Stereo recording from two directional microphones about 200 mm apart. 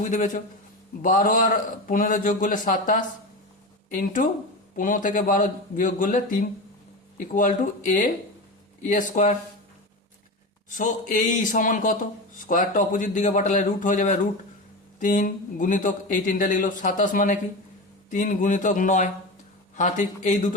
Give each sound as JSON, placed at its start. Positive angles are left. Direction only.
{"t": 0.0, "sound": "speech", "side_deg": 40}
{"t": 10.7, "sound": "speech", "side_deg": 40}